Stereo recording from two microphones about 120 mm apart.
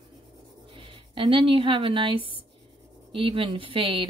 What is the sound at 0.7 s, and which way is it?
Speech, 50° right (ahead or behind).